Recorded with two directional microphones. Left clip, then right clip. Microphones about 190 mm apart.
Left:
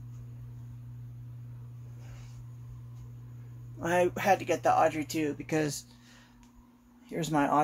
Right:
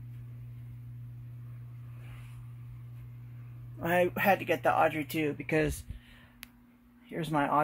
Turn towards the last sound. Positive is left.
turn(degrees=0)  # may be behind; listen again after turning